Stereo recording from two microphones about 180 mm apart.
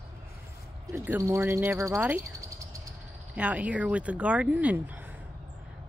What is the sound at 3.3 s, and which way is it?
Speech, 5° right (ahead or behind).